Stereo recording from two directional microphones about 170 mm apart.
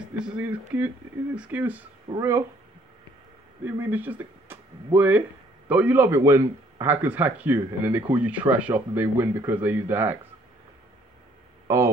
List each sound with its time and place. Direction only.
0.0 s speech: 10° right (ahead or behind)
3.6 s speech: 10° right (ahead or behind)
11.6 s a sound: 20° right (ahead or behind)